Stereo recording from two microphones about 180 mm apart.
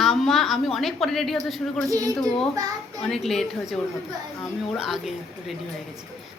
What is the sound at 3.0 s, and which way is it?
A woman's voice, centre (ahead or behind).